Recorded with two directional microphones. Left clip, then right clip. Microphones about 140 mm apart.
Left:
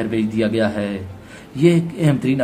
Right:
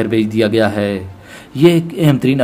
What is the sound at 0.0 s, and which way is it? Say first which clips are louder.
Speech: right 6 dB; 40° right (ahead or behind).